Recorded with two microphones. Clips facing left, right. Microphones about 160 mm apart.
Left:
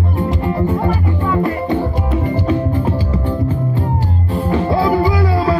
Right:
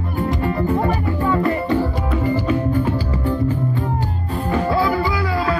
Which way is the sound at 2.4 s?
30° left (ahead or behind).